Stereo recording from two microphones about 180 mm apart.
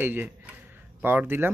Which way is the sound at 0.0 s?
10° right (ahead or behind).